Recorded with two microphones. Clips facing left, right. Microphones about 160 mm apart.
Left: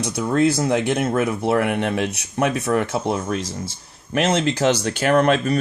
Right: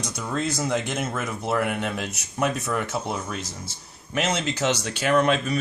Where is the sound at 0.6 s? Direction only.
60° left (ahead or behind).